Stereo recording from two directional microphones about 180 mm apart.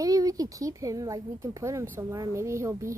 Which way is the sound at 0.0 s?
20° right (ahead or behind).